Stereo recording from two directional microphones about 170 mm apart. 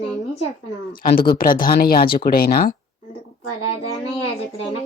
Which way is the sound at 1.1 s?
60° left (ahead or behind).